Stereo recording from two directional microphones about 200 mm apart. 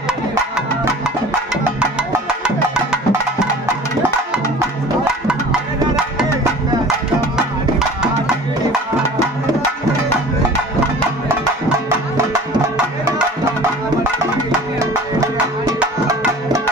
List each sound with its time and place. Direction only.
2.2 s music: 5° right (ahead or behind)
14.8 s music: 15° right (ahead or behind)